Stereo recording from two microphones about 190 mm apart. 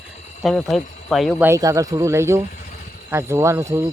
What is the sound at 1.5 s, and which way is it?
Speech, 15° right (ahead or behind).